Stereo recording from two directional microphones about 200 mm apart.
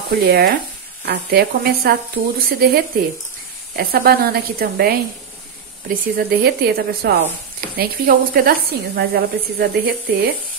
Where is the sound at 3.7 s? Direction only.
50° right (ahead or behind).